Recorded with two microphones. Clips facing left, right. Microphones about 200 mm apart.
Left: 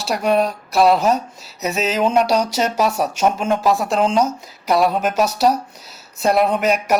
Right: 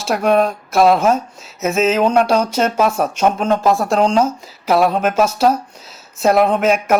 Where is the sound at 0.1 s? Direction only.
60° right (ahead or behind).